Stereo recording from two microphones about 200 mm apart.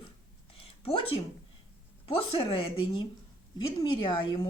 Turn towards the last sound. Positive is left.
turn(degrees=25)  # may be behind; listen again after turning